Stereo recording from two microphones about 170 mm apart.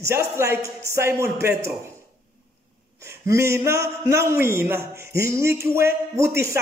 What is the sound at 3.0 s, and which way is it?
A man's voice, 15° right (ahead or behind).